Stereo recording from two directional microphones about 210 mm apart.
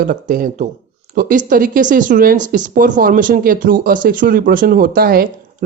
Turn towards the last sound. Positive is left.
turn(degrees=-45)  # may be behind; listen again after turning